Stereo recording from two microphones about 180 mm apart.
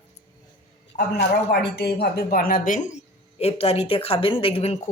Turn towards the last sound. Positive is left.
turn(degrees=35)  # may be behind; listen again after turning